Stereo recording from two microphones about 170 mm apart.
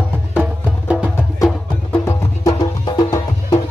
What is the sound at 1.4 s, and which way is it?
Music, 10° left (ahead or behind).